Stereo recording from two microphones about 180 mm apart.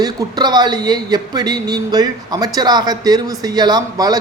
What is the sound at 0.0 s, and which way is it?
Speech, 20° right (ahead or behind).